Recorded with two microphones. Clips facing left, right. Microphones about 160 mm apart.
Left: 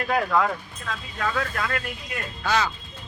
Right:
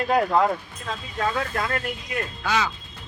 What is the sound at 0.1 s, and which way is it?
Speech, 30° right (ahead or behind).